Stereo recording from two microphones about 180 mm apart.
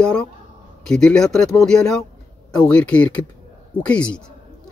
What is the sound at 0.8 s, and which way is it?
Speech, 5° left (ahead or behind).